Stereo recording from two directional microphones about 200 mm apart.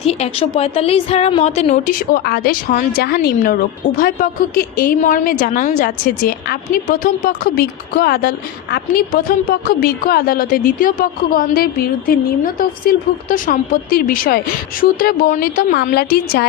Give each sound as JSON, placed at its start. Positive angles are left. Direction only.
{"t": 0.0, "sound": "a woman's voice", "side_deg": 30}